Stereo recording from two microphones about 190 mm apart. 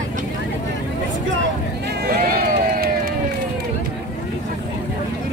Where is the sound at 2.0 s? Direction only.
55° right (ahead or behind).